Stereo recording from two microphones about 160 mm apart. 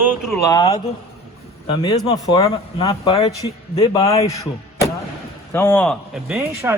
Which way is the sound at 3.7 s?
35° left (ahead or behind).